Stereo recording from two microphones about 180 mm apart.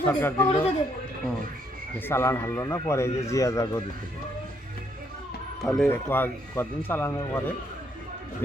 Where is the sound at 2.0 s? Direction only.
15° left (ahead or behind).